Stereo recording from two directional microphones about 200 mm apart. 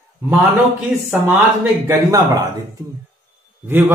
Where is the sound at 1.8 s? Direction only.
15° right (ahead or behind).